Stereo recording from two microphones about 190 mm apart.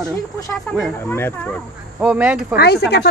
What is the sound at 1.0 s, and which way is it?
Speech, 10° left (ahead or behind).